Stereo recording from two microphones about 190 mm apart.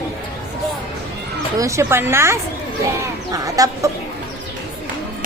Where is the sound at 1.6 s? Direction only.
15° right (ahead or behind).